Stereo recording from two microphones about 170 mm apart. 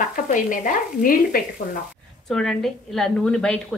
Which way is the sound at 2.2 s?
5° left (ahead or behind).